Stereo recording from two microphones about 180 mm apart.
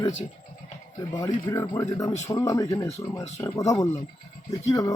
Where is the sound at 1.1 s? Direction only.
20° left (ahead or behind).